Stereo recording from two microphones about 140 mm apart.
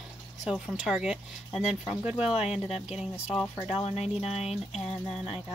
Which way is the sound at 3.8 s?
50° left (ahead or behind).